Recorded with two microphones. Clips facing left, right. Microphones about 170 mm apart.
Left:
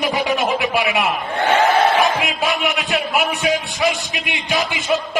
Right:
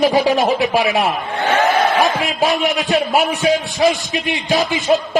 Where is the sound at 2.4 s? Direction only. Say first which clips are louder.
Right 4 dB; 35° right (ahead or behind).